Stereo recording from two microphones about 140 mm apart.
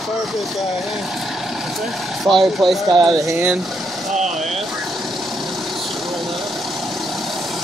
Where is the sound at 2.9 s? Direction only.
25° right (ahead or behind).